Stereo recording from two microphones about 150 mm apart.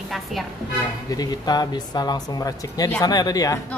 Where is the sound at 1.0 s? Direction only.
25° left (ahead or behind).